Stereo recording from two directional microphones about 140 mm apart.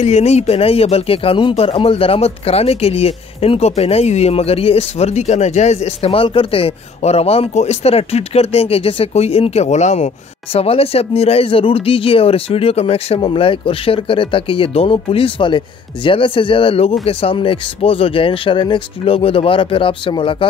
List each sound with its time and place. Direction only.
0.0 s speech: 50° left (ahead or behind)